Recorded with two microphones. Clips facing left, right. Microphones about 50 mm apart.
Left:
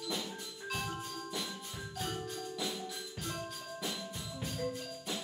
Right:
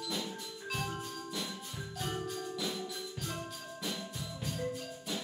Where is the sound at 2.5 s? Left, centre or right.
Centre.